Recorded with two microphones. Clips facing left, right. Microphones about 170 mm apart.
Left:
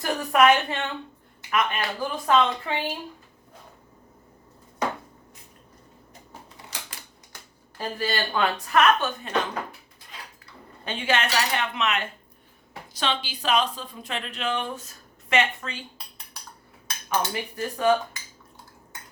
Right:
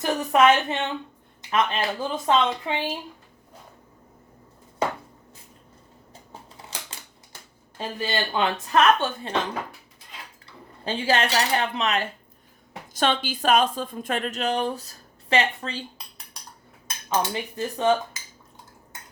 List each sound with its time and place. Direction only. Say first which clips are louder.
0.0 s a woman's voice: right 1 dB; 20° right (ahead or behind)
7.8 s speech: even; 20° right (ahead or behind)
10.4 s speech: right 5 dB; 30° right (ahead or behind)
12.9 s speech: right 5 dB; 50° right (ahead or behind); by 15.8 s 35° right (ahead or behind)
17.1 s speech: right 2 dB; 20° right (ahead or behind)